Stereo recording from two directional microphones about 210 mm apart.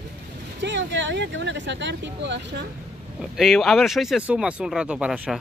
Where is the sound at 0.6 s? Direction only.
55° right (ahead or behind).